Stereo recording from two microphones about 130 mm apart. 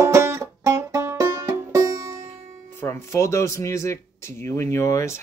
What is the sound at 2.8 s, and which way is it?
Speech, 20° left (ahead or behind).